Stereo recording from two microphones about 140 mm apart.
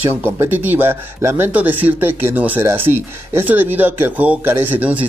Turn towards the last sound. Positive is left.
turn(degrees=-10)  # may be behind; listen again after turning